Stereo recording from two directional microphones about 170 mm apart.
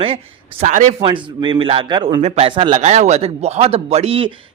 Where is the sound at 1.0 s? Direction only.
30° right (ahead or behind).